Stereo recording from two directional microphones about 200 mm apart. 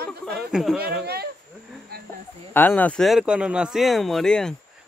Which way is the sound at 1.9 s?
50° right (ahead or behind).